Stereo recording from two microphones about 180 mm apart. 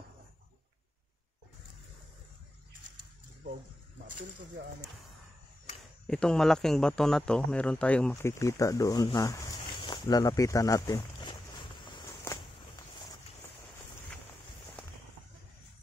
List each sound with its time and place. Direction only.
6.0 s a man's voice: 5° left (ahead or behind); by 11.3 s 25° left (ahead or behind)